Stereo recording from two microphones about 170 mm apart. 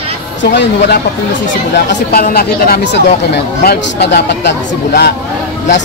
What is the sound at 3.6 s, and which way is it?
Speech, 80° left.